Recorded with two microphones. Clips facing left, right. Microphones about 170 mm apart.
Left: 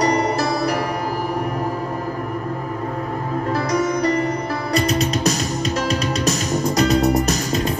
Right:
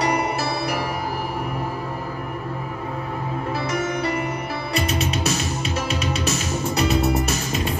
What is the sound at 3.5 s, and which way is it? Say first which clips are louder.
Music: left 5 dB; 40° left (ahead or behind).